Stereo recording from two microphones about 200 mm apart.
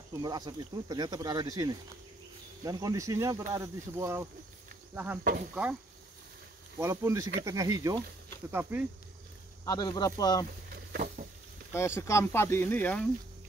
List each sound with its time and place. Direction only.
0.1 s speech: 20° right (ahead or behind)
6.8 s speech: 15° right (ahead or behind)
9.7 s speech: 20° left (ahead or behind)
10.9 s a sound: 40° right (ahead or behind)
11.7 s speech: 15° left (ahead or behind)